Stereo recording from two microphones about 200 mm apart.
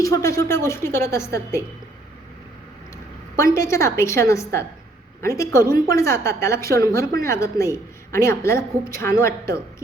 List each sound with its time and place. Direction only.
0.0 s a woman's voice: 15° left (ahead or behind)
3.3 s a woman's voice: 15° left (ahead or behind)